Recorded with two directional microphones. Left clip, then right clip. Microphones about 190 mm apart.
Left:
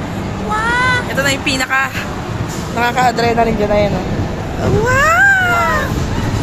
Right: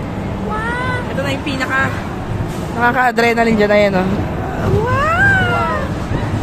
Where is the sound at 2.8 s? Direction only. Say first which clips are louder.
Right 1 dB; 35° right (ahead or behind).